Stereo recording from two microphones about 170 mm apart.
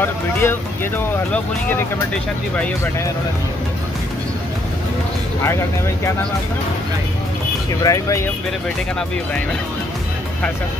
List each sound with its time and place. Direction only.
0.0 s speech: 10° left (ahead or behind)
7.8 s speech: 20° left (ahead or behind)